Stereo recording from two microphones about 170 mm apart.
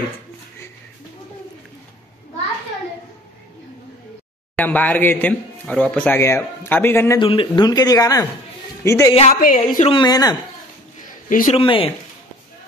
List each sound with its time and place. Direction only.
4.6 s speech: 10° left (ahead or behind)
7.2 s speech: 30° left (ahead or behind)
9.3 s a woman's voice: 55° left (ahead or behind)
9.8 s speech: 25° left (ahead or behind)
11.2 s a man's voice: 50° left (ahead or behind)
11.5 s speech: 30° left (ahead or behind)